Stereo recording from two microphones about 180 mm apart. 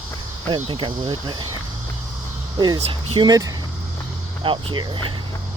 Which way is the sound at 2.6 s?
25° right (ahead or behind).